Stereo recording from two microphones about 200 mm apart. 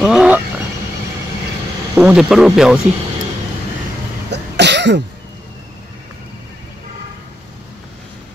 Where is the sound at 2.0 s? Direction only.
5° right (ahead or behind).